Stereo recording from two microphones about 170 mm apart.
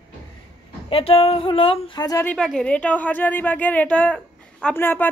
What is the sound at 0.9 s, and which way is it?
A woman's voice, 35° left (ahead or behind).